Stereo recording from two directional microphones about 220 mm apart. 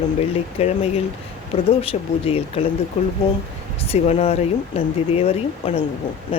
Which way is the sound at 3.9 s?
30° left (ahead or behind).